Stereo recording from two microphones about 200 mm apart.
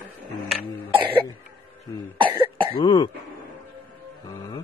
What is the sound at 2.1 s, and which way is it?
Cough, 25° right (ahead or behind).